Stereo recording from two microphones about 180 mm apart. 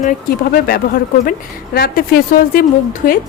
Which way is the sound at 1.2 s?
55° left (ahead or behind).